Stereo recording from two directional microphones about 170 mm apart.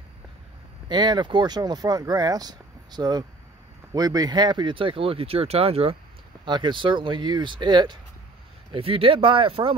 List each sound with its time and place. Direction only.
0.8 s speech: 25° right (ahead or behind)